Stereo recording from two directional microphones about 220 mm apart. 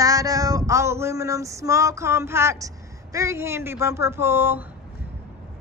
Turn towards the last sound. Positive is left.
turn(degrees=-10)  # may be behind; listen again after turning